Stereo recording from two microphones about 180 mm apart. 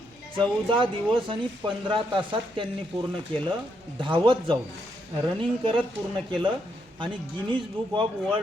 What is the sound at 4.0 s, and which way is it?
Speech, 30° right (ahead or behind).